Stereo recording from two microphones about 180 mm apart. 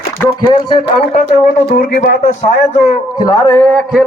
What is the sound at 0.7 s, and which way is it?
Speech, 35° left (ahead or behind).